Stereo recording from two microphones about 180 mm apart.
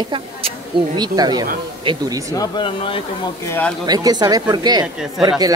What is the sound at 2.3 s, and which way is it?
Speech, 25° left (ahead or behind).